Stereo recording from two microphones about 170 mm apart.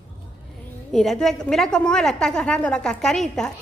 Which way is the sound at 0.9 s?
5° left (ahead or behind).